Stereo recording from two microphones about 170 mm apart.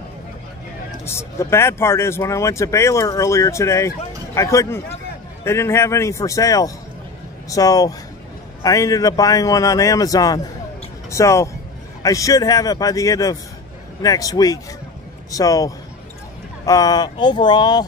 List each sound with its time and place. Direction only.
1.0 s a man's voice: 15° left (ahead or behind)